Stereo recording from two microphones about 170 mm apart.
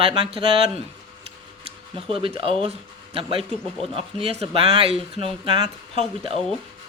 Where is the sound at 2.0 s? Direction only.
30° right (ahead or behind).